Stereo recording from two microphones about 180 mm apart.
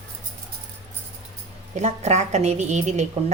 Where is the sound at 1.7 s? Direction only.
40° right (ahead or behind).